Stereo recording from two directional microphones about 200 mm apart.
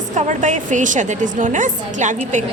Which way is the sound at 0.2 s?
40° right (ahead or behind).